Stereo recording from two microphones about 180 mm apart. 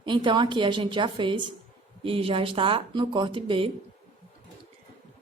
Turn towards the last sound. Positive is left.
turn(degrees=-30)  # may be behind; listen again after turning